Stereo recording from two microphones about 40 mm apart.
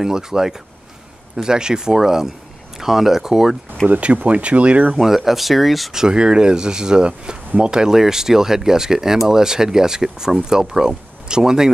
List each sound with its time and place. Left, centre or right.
0.0 s speech: centre
3.8 s speech: right
4.9 s speech: centre
5.9 s speech: centre